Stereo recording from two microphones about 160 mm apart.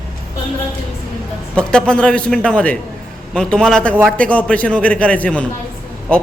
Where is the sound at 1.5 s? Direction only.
5° left (ahead or behind).